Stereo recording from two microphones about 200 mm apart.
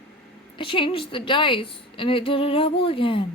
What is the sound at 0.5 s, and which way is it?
A woman's voice, 25° left (ahead or behind).